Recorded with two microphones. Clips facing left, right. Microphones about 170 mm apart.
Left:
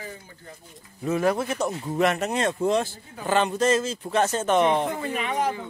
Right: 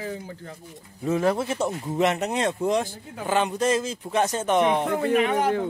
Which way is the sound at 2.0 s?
20° right (ahead or behind).